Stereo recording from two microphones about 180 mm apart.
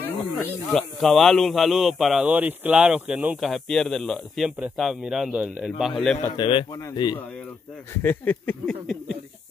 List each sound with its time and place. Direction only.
0.0 s speech: 5° left (ahead or behind)
6.3 s a man's voice: 25° left (ahead or behind)
7.9 s a sound: 10° left (ahead or behind)